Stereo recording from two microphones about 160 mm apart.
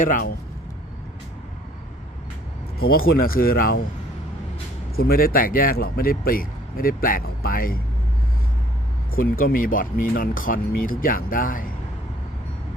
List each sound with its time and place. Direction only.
0.0 s speech: 55° left (ahead or behind)
2.7 s speech: 70° left (ahead or behind)
4.9 s speech: 70° left (ahead or behind)
9.1 s speech: 65° left (ahead or behind)